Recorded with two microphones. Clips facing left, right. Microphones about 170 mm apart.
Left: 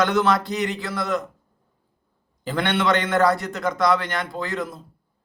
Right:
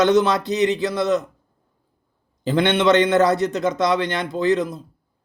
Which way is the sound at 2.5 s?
20° right (ahead or behind).